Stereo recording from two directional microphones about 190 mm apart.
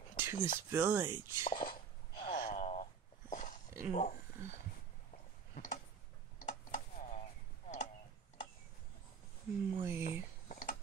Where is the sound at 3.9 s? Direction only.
35° left (ahead or behind).